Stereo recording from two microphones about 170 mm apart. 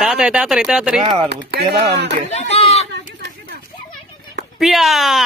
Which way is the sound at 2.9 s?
85° right.